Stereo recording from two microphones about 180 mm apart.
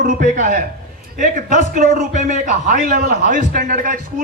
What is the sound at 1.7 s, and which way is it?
A man's voice, 50° right (ahead or behind).